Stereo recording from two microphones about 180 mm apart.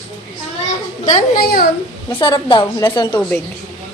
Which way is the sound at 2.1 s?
30° left (ahead or behind).